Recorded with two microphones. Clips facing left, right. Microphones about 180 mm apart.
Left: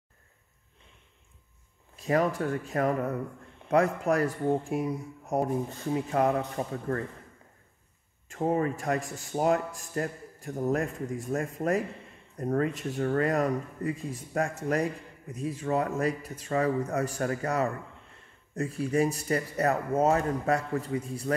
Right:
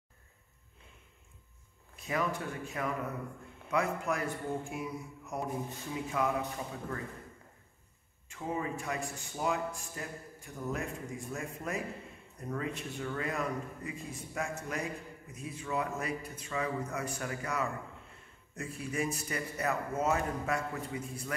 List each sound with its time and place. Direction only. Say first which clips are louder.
2.0 s a man's voice: left 8 dB; 40° left (ahead or behind)
8.3 s a man's voice: left 9 dB; 45° left (ahead or behind)
18.8 s speech: left 8 dB; 35° left (ahead or behind)